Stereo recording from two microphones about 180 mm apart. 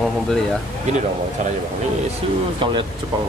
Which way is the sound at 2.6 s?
30° right (ahead or behind).